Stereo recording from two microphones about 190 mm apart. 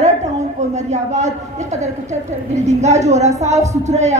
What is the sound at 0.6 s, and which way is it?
A woman's voice, 35° right (ahead or behind).